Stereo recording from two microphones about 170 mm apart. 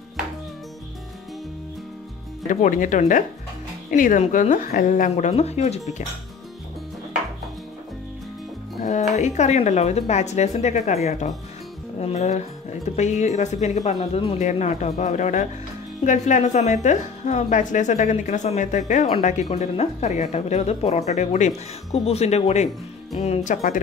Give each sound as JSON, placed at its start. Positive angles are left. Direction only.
{"t": 2.4, "sound": "a woman's voice", "side_deg": 50}
{"t": 9.1, "sound": "a woman's voice", "side_deg": 40}